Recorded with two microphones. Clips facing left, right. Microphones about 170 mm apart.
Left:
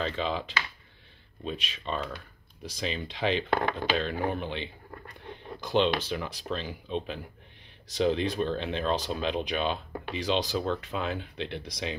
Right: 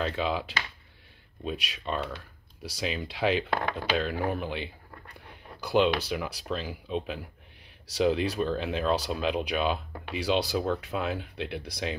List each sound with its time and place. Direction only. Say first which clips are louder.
0.0 s speech: right 1 dB; 10° right (ahead or behind)